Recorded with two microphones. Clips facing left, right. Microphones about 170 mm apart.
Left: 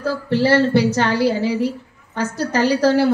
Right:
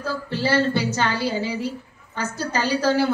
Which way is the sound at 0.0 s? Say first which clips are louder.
Left 7 dB; 70° left (ahead or behind).